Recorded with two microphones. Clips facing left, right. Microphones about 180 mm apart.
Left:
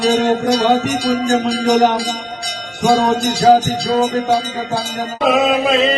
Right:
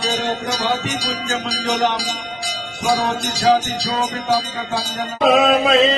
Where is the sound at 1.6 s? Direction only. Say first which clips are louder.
Left 6 dB; 40° left (ahead or behind).